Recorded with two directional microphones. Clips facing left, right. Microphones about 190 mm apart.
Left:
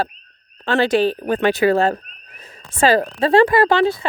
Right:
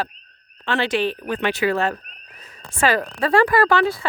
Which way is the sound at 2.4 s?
30° left (ahead or behind).